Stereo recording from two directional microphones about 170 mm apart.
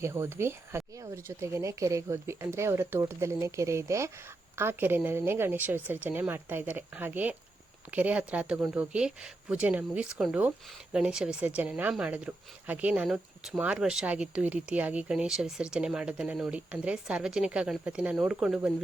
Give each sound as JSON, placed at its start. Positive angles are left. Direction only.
{"t": 0.0, "sound": "a woman's voice", "side_deg": -15}